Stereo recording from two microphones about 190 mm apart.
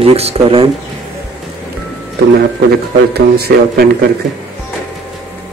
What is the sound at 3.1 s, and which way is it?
Speech, 55° right (ahead or behind).